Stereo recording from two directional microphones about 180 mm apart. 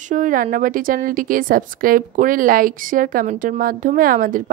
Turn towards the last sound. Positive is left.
turn(degrees=-50)  # may be behind; listen again after turning